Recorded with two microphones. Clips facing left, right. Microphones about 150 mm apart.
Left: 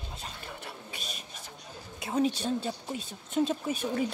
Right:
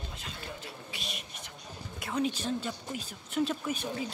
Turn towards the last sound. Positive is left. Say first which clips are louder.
# left 5 dB
turn(degrees=50)  # may be behind; listen again after turning